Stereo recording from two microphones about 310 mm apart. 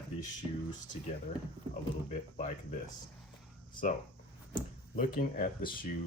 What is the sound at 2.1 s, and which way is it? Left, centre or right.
Speech, left.